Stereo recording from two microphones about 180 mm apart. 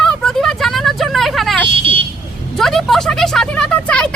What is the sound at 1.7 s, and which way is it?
Vehicle, 30° right (ahead or behind).